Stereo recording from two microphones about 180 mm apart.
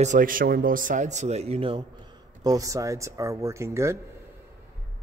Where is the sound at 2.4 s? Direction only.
20° right (ahead or behind).